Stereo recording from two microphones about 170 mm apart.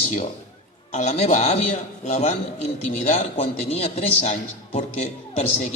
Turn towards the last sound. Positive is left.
turn(degrees=40)  # may be behind; listen again after turning